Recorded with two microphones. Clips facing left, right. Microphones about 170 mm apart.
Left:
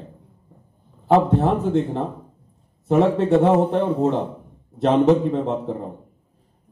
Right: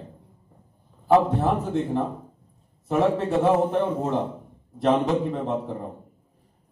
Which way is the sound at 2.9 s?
25° left (ahead or behind).